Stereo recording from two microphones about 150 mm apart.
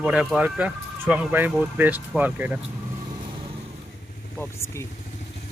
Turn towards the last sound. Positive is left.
turn(degrees=20)  # may be behind; listen again after turning